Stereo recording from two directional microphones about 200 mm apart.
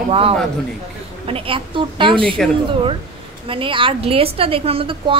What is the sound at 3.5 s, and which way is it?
A woman's voice, 25° right (ahead or behind).